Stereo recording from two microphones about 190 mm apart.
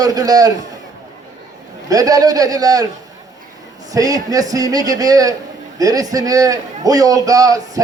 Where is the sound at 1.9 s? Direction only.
20° right (ahead or behind).